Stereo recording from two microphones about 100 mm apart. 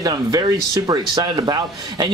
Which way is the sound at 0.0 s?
40° right (ahead or behind).